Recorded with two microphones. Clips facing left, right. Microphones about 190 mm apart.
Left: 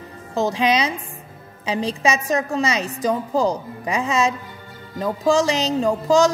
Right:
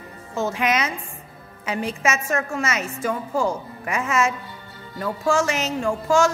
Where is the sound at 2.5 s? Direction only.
35° left (ahead or behind).